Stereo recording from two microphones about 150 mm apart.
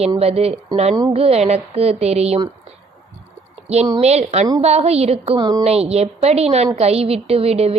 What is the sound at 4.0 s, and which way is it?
A woman's voice, 45° right (ahead or behind).